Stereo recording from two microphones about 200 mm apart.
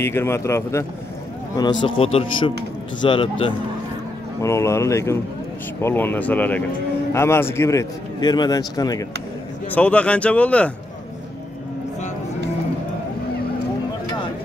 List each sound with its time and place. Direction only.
0.0 s a man's voice: 10° left (ahead or behind)
4.4 s a man's voice: 15° left (ahead or behind)
9.7 s a man's voice: 5° left (ahead or behind)